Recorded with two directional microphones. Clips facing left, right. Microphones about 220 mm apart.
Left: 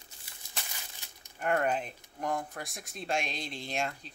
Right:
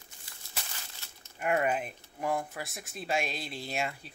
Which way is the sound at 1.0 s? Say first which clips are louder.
Even; 15° left (ahead or behind).